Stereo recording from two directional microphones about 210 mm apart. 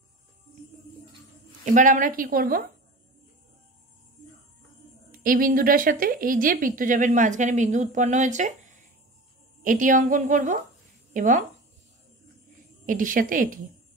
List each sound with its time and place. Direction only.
1.6 s a woman's voice: 35° right (ahead or behind)
5.1 s a woman's voice: 40° right (ahead or behind)
12.8 s a woman's voice: 40° right (ahead or behind)